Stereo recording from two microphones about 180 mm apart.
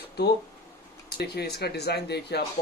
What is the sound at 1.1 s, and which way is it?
Speech, 65° left (ahead or behind).